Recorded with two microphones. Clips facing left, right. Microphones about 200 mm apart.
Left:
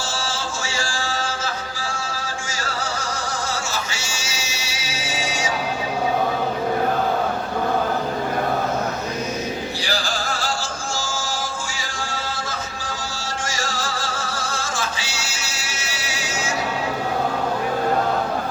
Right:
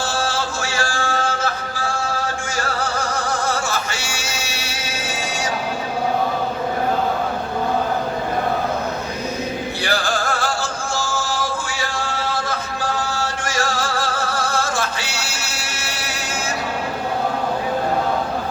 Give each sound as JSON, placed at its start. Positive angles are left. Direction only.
{"t": 0.1, "sound": "music", "side_deg": -60}
{"t": 9.8, "sound": "music", "side_deg": -55}